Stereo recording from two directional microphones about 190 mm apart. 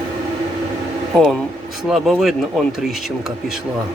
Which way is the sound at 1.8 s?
Centre (ahead or behind).